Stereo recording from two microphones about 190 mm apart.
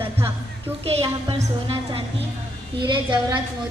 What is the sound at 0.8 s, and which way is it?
A woman's voice, 30° right (ahead or behind).